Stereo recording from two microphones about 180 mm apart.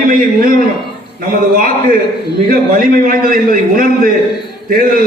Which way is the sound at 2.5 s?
50° right (ahead or behind).